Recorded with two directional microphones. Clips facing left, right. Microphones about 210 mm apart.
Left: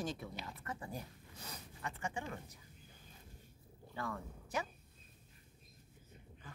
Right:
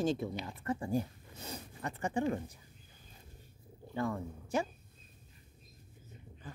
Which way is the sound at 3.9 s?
25° right (ahead or behind).